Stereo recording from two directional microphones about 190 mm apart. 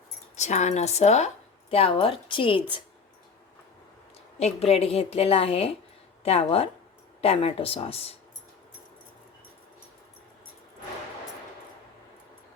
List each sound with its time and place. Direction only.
0.3 s a woman's voice: 35° left (ahead or behind)
4.4 s a woman's voice: 35° left (ahead or behind)